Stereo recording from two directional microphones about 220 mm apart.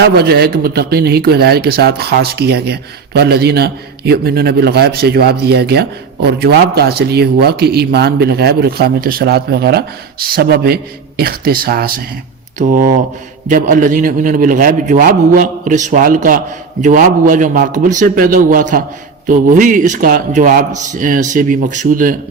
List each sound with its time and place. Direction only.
0.0 s a man's voice: 45° right (ahead or behind)